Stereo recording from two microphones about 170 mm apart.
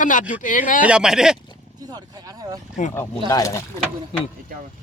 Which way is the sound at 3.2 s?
20° left (ahead or behind).